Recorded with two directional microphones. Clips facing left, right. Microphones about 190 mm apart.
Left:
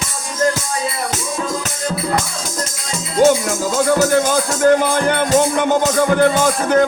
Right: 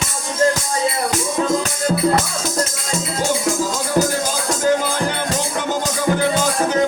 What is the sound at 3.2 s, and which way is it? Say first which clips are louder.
Music: left 7 dB; 65° left (ahead or behind).